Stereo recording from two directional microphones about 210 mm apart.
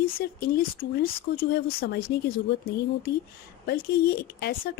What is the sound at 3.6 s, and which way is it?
Speech, 45° left (ahead or behind).